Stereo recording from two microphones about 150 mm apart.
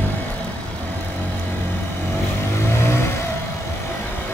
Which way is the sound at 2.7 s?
20° left (ahead or behind).